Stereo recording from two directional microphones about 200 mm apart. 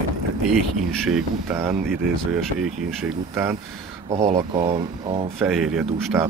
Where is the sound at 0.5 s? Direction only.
Centre (ahead or behind).